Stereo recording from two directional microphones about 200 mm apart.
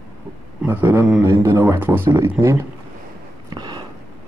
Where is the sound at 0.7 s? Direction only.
10° right (ahead or behind).